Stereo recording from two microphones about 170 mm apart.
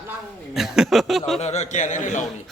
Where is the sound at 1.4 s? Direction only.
40° left (ahead or behind).